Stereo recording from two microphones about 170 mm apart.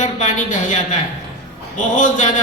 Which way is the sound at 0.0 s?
45° left (ahead or behind).